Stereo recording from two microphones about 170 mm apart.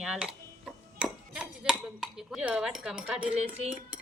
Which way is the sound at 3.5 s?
40° right (ahead or behind).